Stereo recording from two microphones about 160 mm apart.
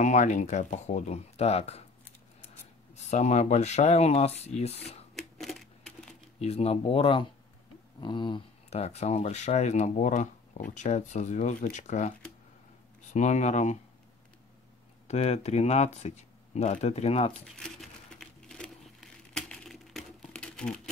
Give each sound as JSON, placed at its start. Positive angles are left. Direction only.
{"t": 0.0, "sound": "speech", "side_deg": 45}
{"t": 3.1, "sound": "speech", "side_deg": 45}
{"t": 5.1, "sound": "typewriter", "side_deg": 0}
{"t": 6.4, "sound": "speech", "side_deg": 40}
{"t": 15.0, "sound": "speech", "side_deg": 45}
{"t": 17.6, "sound": "a sound", "side_deg": 5}